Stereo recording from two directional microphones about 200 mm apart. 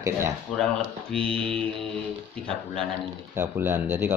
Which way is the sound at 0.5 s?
Centre (ahead or behind).